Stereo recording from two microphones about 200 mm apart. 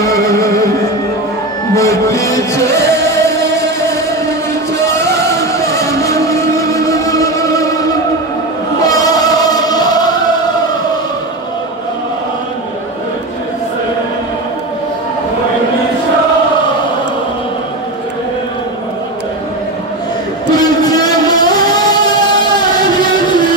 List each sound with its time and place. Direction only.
1.8 s music: 15° left (ahead or behind)
5.4 s music: 15° left (ahead or behind)
8.8 s music: 20° left (ahead or behind)
20.5 s vehicle: 20° left (ahead or behind)